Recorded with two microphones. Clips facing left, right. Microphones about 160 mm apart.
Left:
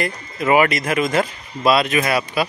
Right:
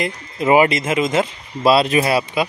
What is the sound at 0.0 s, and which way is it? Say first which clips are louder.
Speech: right 1 dB; 25° right (ahead or behind).